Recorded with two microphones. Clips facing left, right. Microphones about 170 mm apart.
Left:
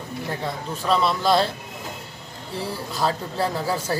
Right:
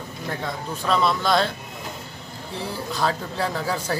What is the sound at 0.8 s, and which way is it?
Speech, 5° left (ahead or behind).